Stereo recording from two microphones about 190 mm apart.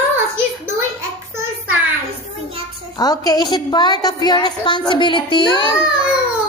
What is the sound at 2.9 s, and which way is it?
A woman's voice, 20° left (ahead or behind).